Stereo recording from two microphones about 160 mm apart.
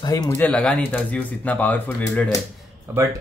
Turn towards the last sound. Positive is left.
turn(degrees=-15)  # may be behind; listen again after turning